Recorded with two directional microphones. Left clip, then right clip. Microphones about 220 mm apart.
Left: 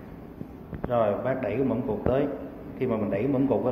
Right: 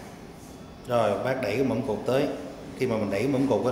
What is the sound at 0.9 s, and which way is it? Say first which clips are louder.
A man's voice: right 1 dB; 20° right (ahead or behind).